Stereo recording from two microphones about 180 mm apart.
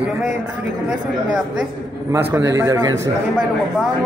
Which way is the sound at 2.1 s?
15° right (ahead or behind).